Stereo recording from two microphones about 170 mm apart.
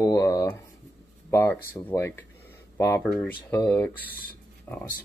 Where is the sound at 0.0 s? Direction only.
20° left (ahead or behind).